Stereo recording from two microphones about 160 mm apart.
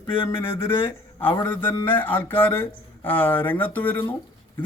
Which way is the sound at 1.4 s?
10° left (ahead or behind).